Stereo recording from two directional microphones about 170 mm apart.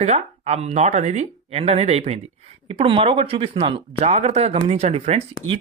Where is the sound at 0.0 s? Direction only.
40° right (ahead or behind).